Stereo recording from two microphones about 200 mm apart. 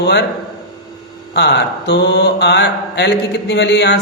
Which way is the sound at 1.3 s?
55° left (ahead or behind).